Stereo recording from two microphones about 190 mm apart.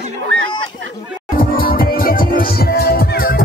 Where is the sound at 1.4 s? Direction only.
50° left (ahead or behind).